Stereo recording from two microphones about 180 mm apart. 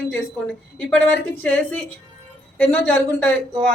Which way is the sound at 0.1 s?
5° left (ahead or behind).